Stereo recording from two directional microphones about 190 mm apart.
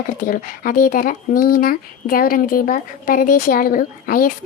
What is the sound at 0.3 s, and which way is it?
Speech, 45° left (ahead or behind).